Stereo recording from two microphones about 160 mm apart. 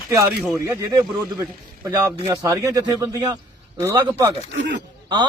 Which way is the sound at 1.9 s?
20° right (ahead or behind).